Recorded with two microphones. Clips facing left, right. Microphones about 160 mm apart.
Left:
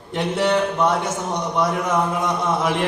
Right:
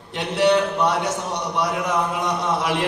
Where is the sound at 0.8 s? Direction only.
50° left (ahead or behind).